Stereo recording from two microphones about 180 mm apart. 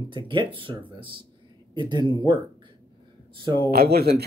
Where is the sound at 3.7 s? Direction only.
60° right (ahead or behind).